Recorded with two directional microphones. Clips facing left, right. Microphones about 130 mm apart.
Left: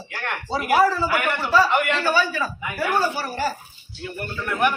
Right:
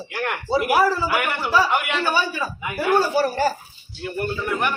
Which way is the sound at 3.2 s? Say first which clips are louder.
Right 5 dB; 40° right (ahead or behind).